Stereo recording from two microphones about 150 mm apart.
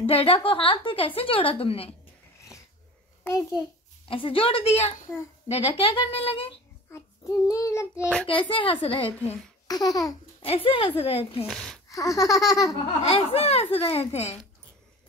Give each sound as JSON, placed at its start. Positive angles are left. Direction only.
{"t": 0.0, "sound": "a woman's voice", "side_deg": 40}
{"t": 3.3, "sound": "baby laughter", "side_deg": 20}
{"t": 4.1, "sound": "a woman's voice", "side_deg": 35}
{"t": 6.9, "sound": "child singing", "side_deg": 20}
{"t": 8.3, "sound": "a woman's voice", "side_deg": 35}
{"t": 9.7, "sound": "baby laughter", "side_deg": 25}
{"t": 10.4, "sound": "a woman's voice", "side_deg": 40}
{"t": 11.4, "sound": "speech", "side_deg": 5}
{"t": 11.9, "sound": "baby laughter", "side_deg": 20}
{"t": 13.0, "sound": "speech", "side_deg": 45}